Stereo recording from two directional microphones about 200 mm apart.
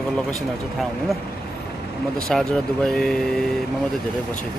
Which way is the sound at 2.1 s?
Centre (ahead or behind).